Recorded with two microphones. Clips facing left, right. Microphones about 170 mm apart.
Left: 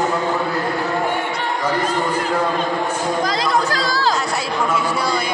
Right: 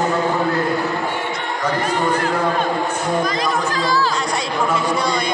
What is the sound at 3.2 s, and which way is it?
Speech, 90° left.